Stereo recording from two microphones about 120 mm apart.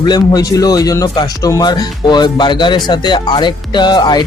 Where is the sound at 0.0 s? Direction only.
35° left (ahead or behind).